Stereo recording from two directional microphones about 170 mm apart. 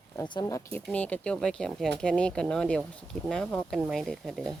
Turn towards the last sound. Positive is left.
turn(degrees=0)  # may be behind; listen again after turning